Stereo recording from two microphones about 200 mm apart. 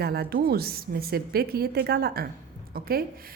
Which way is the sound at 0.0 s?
50° right (ahead or behind).